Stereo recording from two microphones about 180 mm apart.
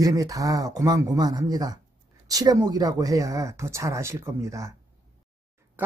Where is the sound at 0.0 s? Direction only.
20° right (ahead or behind).